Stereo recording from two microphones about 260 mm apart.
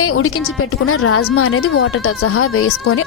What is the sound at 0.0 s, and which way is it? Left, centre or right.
A woman's voice, left.